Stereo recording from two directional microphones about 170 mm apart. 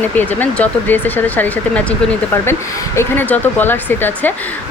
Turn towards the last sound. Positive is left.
turn(degrees=10)  # may be behind; listen again after turning